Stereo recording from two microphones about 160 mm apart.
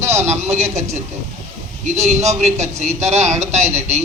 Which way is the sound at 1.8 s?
45° right (ahead or behind).